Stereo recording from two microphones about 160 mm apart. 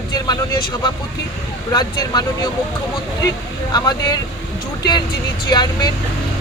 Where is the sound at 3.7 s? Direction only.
25° left (ahead or behind).